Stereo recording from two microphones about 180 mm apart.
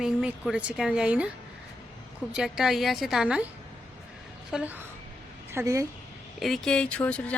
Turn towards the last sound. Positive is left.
turn(degrees=10)  # may be behind; listen again after turning